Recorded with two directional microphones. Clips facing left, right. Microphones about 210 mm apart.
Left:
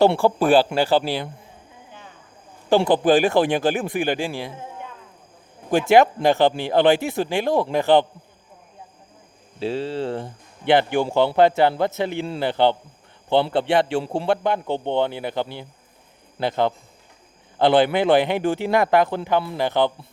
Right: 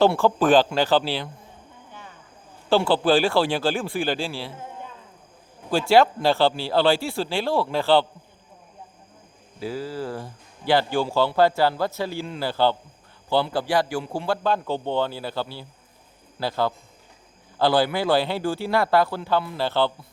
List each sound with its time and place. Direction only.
0.2 s speech: 10° left (ahead or behind)
2.6 s speech: 15° left (ahead or behind)
5.7 s speech: 20° left (ahead or behind)
9.6 s speech: 25° left (ahead or behind)
14.3 s speech: 15° left (ahead or behind)